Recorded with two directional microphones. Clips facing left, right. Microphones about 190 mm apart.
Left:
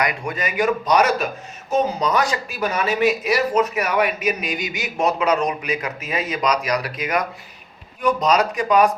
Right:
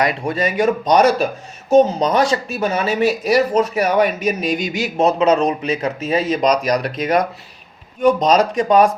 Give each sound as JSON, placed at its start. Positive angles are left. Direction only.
{"t": 0.0, "sound": "a man's voice", "side_deg": -25}